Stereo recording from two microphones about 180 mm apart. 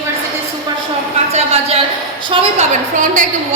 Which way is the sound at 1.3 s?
35° right (ahead or behind).